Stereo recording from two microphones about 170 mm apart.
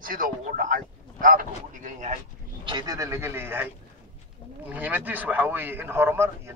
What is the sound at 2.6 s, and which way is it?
Speech, 25° right (ahead or behind).